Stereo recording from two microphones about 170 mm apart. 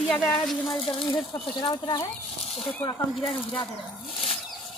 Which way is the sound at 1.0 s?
25° left (ahead or behind).